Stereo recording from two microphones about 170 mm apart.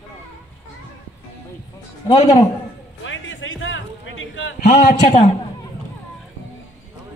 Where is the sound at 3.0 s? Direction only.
90° left.